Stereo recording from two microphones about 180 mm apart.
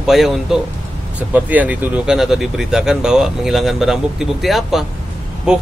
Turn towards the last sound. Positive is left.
turn(degrees=-5)  # may be behind; listen again after turning